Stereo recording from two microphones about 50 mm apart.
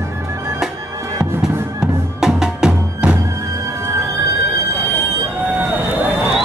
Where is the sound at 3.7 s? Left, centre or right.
Right.